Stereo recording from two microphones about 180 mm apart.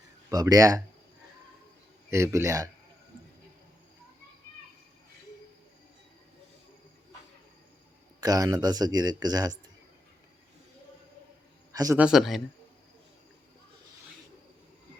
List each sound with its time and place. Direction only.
0.3 s speech: 20° right (ahead or behind)
2.0 s speech: 15° right (ahead or behind)
8.2 s speech: 20° right (ahead or behind)
11.7 s a man's voice: 20° right (ahead or behind)
11.9 s speech: 5° right (ahead or behind)